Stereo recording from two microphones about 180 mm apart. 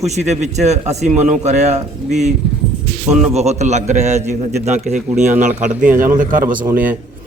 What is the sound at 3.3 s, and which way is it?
A man's voice, 40° right (ahead or behind).